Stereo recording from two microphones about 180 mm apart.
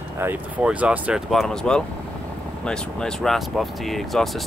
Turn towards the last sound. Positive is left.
turn(degrees=0)  # may be behind; listen again after turning